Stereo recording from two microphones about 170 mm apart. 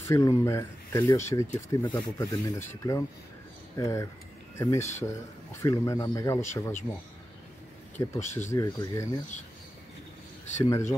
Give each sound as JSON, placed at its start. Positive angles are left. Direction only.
{"t": 0.0, "sound": "speech", "side_deg": 15}
{"t": 8.0, "sound": "speech", "side_deg": 20}
{"t": 10.6, "sound": "speech", "side_deg": 15}